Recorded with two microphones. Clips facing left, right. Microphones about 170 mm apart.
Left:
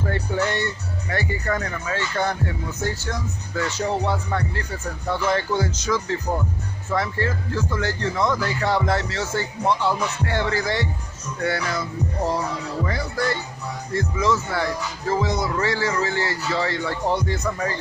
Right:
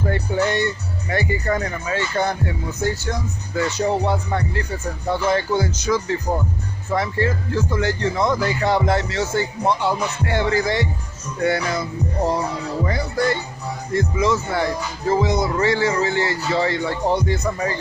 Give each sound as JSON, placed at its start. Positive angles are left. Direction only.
{"t": 0.0, "sound": "speech", "side_deg": -15}